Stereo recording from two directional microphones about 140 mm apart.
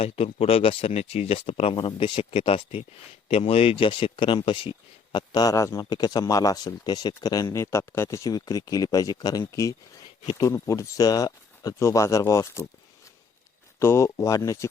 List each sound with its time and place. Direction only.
0.0 s speech: 45° left (ahead or behind); by 12.6 s 20° left (ahead or behind)
13.7 s speech: 20° left (ahead or behind)